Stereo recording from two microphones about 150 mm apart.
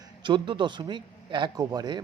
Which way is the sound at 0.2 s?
30° right (ahead or behind).